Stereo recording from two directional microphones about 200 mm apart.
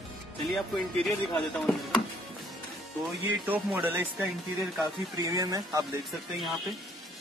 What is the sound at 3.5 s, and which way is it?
Speech, 10° right (ahead or behind).